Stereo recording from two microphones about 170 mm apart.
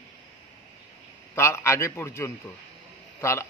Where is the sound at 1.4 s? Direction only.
15° left (ahead or behind).